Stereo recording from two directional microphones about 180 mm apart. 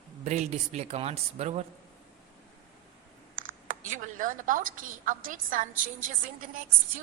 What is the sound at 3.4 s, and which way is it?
A woman's voice, 45° right (ahead or behind).